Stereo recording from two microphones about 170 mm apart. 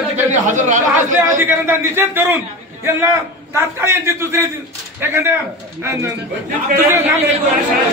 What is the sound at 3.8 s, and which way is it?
Speech, 15° right (ahead or behind).